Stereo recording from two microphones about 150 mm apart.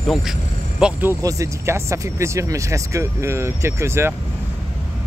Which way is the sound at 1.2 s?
20° right (ahead or behind).